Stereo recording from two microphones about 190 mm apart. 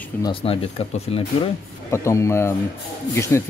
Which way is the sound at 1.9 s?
15° left (ahead or behind).